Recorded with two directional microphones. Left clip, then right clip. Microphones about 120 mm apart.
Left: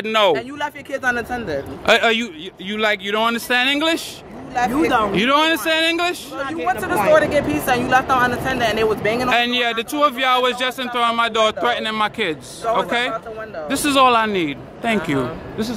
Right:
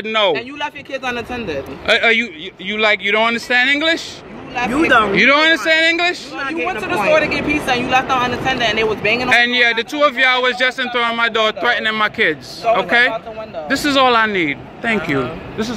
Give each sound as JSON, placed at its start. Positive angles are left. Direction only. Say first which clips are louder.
{"t": 0.0, "sound": "a man's voice", "louder": "even", "side_deg": 80}
{"t": 2.0, "sound": "speech", "louder": "right 4 dB", "side_deg": 35}
{"t": 3.3, "sound": "speech", "louder": "right 3 dB", "side_deg": 40}
{"t": 4.7, "sound": "speech", "louder": "right 7 dB", "side_deg": 20}
{"t": 7.2, "sound": "speech", "louder": "right 1 dB", "side_deg": 35}
{"t": 14.9, "sound": "speech", "louder": "right 2 dB", "side_deg": 25}